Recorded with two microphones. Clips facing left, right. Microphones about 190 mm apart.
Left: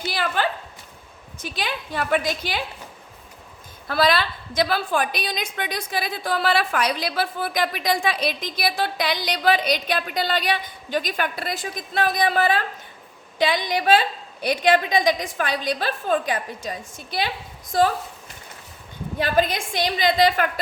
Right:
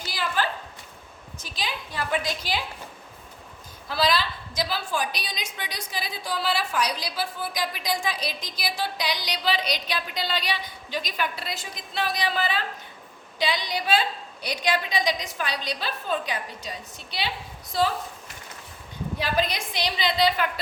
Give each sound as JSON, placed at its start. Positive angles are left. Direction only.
{"t": 0.1, "sound": "a sound", "side_deg": 60}
{"t": 1.4, "sound": "a woman's voice", "side_deg": 55}
{"t": 3.8, "sound": "a woman's voice", "side_deg": 55}
{"t": 19.2, "sound": "a woman's voice", "side_deg": 50}